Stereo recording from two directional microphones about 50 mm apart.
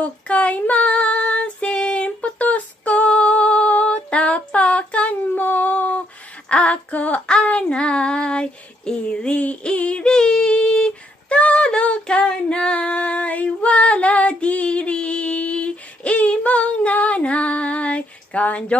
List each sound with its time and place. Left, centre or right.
0.0 s female singing: left
5.3 s a sound: left
6.5 s female singing: left
7.4 s child singing: left